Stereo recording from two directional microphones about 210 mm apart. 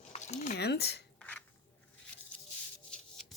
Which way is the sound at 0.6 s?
50° left (ahead or behind).